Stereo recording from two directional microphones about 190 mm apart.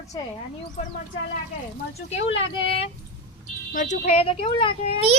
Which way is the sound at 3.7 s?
40° left (ahead or behind).